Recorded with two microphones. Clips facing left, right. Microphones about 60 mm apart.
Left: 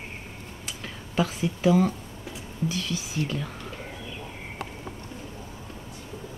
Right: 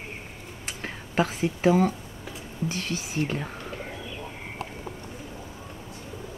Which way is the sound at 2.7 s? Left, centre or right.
Right.